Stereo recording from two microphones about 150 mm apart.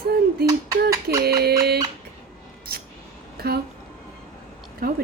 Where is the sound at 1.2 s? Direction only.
90° right.